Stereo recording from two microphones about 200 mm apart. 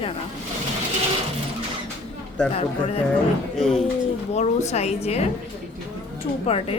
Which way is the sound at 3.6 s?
Centre (ahead or behind).